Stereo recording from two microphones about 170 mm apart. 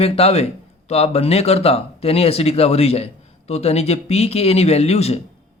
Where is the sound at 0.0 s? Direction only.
35° left (ahead or behind).